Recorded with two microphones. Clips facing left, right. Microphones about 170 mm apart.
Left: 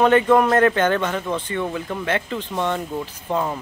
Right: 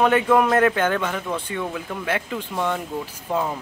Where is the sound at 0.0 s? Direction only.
5° right (ahead or behind).